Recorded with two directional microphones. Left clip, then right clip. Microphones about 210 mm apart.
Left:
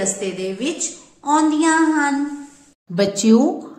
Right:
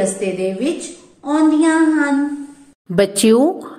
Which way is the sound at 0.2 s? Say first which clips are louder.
Right 4 dB; 10° left (ahead or behind).